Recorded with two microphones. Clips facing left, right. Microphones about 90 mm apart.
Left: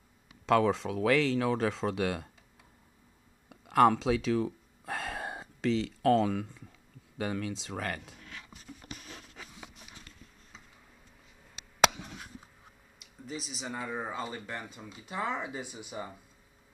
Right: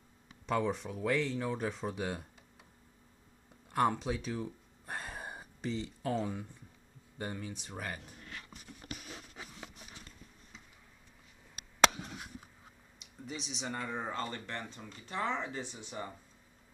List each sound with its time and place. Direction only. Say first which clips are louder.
0.5 s speech: left 7 dB; 90° left
3.4 s a sound: left 7 dB; 90° left
7.2 s speech: left 7 dB; 90° left
13.3 s speech: left 1 dB; 5° left (ahead or behind)